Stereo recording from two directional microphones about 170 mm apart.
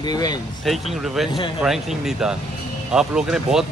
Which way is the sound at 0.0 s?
25° left (ahead or behind).